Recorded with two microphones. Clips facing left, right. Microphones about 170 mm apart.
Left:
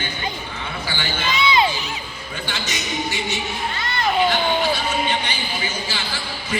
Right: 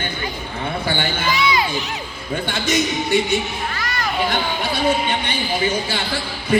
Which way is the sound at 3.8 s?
25° left (ahead or behind).